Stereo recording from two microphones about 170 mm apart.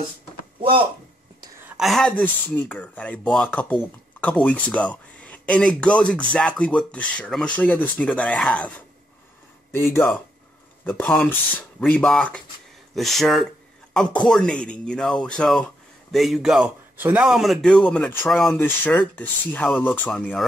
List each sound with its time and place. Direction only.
0.6 s speech: 30° right (ahead or behind)
1.7 s speech: centre (ahead or behind)